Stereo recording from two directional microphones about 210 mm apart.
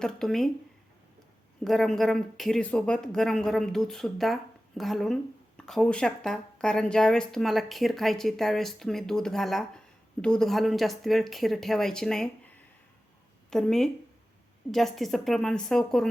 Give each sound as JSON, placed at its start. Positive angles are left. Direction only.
{"t": 0.0, "sound": "speech", "side_deg": 0}
{"t": 1.6, "sound": "speech", "side_deg": 0}